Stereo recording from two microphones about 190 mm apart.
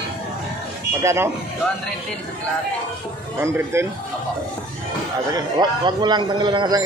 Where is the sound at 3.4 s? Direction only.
15° right (ahead or behind).